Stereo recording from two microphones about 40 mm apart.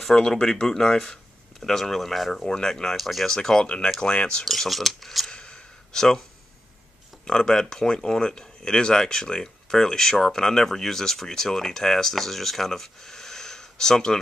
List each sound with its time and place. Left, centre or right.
0.0 s speech: centre
2.3 s speech: centre
3.0 s speech: centre
3.3 s speech: centre
3.6 s speech: left
4.5 s speech: centre
5.3 s a sound: left
5.9 s speech: centre
7.2 s speech: centre